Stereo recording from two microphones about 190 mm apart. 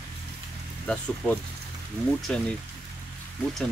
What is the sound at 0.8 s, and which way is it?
Speech, 5° left (ahead or behind).